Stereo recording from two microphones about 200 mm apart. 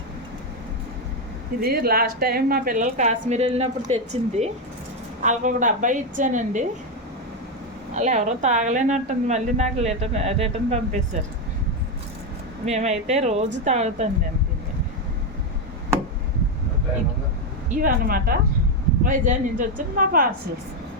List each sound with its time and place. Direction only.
1.6 s a woman's voice: 50° right (ahead or behind)
7.9 s a woman's voice: 35° right (ahead or behind)
12.6 s a woman's voice: 35° right (ahead or behind)
17.7 s a woman's voice: 45° right (ahead or behind)